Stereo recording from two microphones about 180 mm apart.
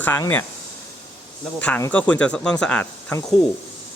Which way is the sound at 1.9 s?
10° left (ahead or behind).